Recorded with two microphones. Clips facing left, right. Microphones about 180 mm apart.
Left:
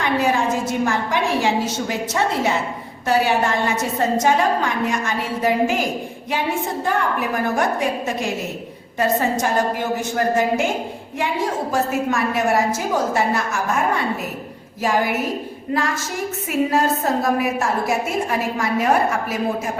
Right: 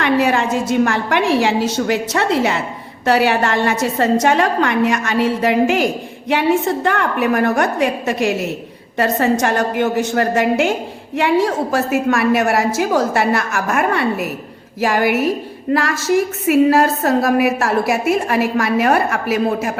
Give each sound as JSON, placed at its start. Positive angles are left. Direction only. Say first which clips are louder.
{"t": 0.0, "sound": "a woman's voice", "louder": "right 4 dB", "side_deg": -75}
{"t": 6.8, "sound": "a woman's voice", "louder": "right 4 dB", "side_deg": -70}